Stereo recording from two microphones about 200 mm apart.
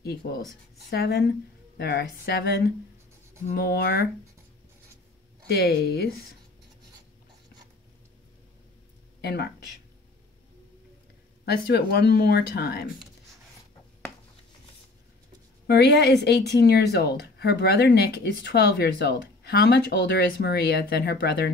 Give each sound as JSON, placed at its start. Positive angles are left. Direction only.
{"t": 0.0, "sound": "speech", "side_deg": 55}
{"t": 5.5, "sound": "speech", "side_deg": 50}
{"t": 9.2, "sound": "speech", "side_deg": 55}
{"t": 11.4, "sound": "speech", "side_deg": 55}
{"t": 15.6, "sound": "speech", "side_deg": 55}